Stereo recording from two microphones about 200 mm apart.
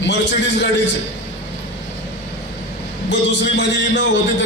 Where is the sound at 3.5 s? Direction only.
60° left (ahead or behind).